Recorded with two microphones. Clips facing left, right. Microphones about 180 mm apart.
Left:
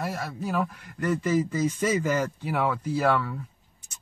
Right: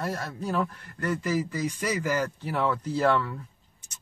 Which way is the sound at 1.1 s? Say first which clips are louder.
Left 3 dB; 20° left (ahead or behind).